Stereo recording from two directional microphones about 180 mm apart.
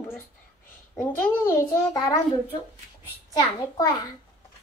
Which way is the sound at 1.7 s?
20° left (ahead or behind).